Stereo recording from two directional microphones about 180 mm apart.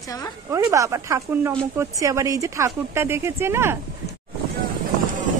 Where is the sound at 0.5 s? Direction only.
15° right (ahead or behind).